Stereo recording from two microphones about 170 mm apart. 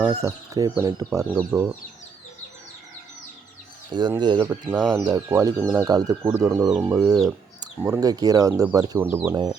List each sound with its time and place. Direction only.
0.1 s speech: 20° right (ahead or behind)
4.2 s speech: 25° right (ahead or behind)
9.3 s speech: 25° right (ahead or behind)